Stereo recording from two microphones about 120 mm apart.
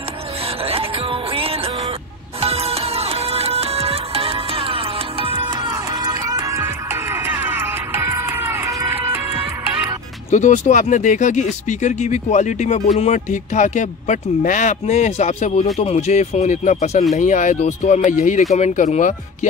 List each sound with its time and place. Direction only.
1.3 s music: 50° right (ahead or behind); by 6.6 s 30° right (ahead or behind)
6.6 s music: 20° right (ahead or behind)
10.3 s speech: 85° left
15.8 s speech: 60° left (ahead or behind)
17.1 s speech: 90° left
18.5 s speech: 75° left (ahead or behind); by 19.1 s 90° left